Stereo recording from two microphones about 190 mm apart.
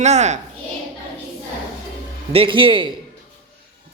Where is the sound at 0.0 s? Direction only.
35° right (ahead or behind).